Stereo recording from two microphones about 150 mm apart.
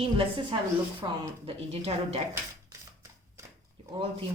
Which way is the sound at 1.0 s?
25° right (ahead or behind).